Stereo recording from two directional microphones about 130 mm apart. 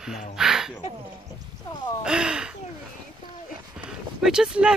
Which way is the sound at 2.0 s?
5° right (ahead or behind).